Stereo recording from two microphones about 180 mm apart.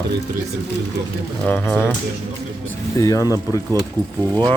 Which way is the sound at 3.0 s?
15° left (ahead or behind).